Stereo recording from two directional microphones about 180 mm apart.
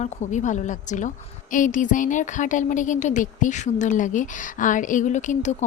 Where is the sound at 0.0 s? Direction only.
40° left (ahead or behind).